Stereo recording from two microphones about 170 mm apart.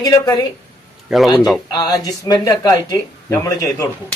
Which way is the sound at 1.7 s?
20° left (ahead or behind).